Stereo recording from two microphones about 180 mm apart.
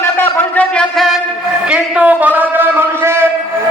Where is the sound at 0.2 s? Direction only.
10° left (ahead or behind).